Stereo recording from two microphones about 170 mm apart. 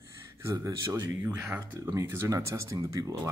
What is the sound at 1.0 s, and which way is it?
Speech, 10° right (ahead or behind).